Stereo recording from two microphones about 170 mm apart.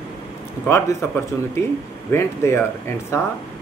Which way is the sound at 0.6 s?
15° left (ahead or behind).